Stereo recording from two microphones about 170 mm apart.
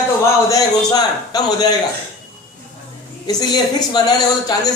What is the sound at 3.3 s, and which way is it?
A man's voice, 25° left (ahead or behind).